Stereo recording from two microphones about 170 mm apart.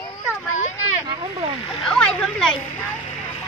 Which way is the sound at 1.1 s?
30° right (ahead or behind).